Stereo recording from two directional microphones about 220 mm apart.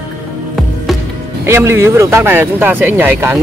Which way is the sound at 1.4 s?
10° right (ahead or behind).